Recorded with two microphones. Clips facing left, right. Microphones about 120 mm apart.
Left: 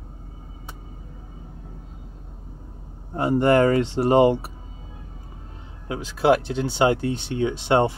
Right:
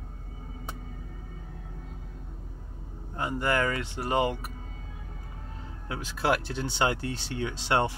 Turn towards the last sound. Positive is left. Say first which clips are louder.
# left 7 dB
turn(degrees=20)  # may be behind; listen again after turning